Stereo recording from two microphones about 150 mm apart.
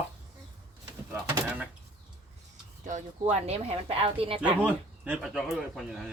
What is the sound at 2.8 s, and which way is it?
Speech, 55° right (ahead or behind).